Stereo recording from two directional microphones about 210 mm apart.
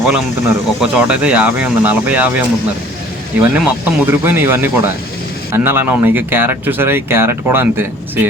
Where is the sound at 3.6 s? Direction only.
10° right (ahead or behind).